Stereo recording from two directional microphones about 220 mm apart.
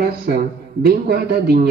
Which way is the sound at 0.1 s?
45° right (ahead or behind).